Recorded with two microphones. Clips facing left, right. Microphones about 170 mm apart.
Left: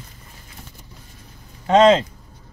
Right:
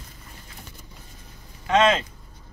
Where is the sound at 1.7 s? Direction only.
35° left (ahead or behind).